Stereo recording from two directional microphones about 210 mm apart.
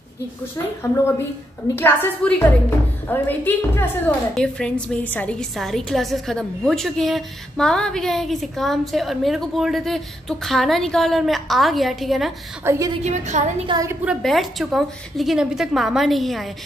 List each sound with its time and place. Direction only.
1.8 s a woman's voice: 10° left (ahead or behind)
12.6 s a woman's voice: 15° right (ahead or behind)
13.0 s a woman's voice: 35° right (ahead or behind)
13.7 s a woman's voice: 10° right (ahead or behind)
14.2 s a woman's voice: centre (ahead or behind)